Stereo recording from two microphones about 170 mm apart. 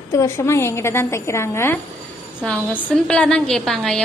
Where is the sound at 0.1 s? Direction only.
15° left (ahead or behind).